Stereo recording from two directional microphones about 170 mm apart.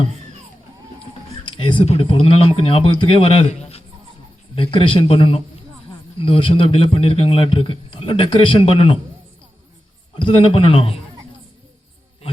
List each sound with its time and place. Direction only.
1.5 s a man's voice: 30° left (ahead or behind)
10.2 s a man's voice: 30° left (ahead or behind)